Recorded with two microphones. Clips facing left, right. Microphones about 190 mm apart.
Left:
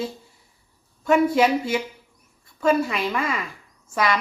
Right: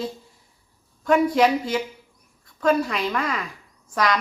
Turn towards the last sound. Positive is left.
turn(degrees=5)  # may be behind; listen again after turning